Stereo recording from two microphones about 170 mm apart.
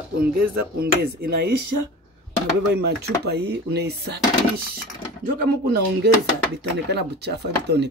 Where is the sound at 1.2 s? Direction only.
75° right (ahead or behind).